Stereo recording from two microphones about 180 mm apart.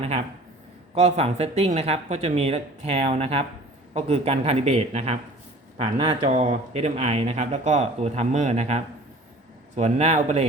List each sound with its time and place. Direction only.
0.9 s speech: 35° right (ahead or behind)